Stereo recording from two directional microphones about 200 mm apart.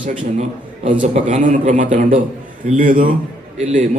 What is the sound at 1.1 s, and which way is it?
A man's voice, 35° right (ahead or behind).